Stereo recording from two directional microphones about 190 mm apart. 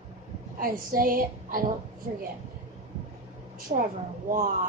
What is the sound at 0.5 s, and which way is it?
A woman's voice, 50° right (ahead or behind).